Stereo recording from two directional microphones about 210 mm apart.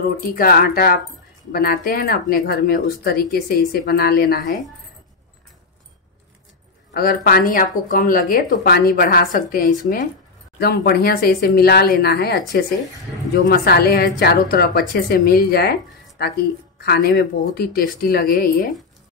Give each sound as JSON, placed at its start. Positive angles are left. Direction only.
{"t": 0.3, "sound": "a woman's voice", "side_deg": 45}
{"t": 6.9, "sound": "a woman's voice", "side_deg": 45}